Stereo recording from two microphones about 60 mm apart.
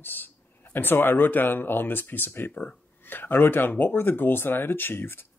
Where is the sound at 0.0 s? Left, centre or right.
Left.